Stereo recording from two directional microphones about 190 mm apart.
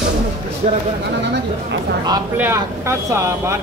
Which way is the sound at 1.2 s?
65° right (ahead or behind).